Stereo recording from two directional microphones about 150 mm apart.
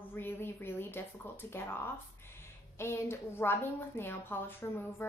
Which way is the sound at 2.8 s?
15° left (ahead or behind).